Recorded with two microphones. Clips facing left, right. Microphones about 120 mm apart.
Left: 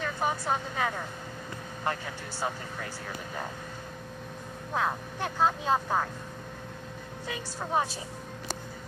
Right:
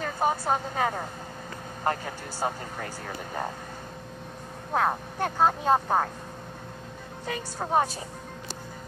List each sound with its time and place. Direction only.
0.0 s a woman's voice: 40° right (ahead or behind)
4.7 s speech: 50° right (ahead or behind)
7.2 s speech: 50° right (ahead or behind)